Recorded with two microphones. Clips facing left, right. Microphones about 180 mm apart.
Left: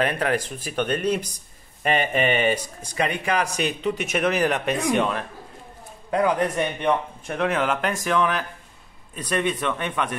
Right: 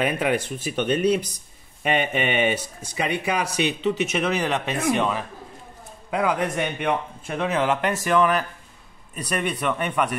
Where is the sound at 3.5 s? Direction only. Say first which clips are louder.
Right 2 dB; 40° left (ahead or behind).